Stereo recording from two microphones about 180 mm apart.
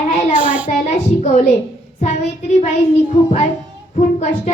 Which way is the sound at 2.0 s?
40° left (ahead or behind).